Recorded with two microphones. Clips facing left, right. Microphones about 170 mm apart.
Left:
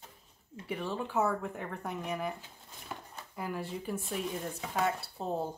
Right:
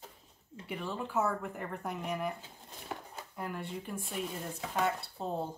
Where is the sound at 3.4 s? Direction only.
Centre (ahead or behind).